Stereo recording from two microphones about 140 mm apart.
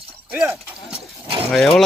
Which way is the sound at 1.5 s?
5° left (ahead or behind).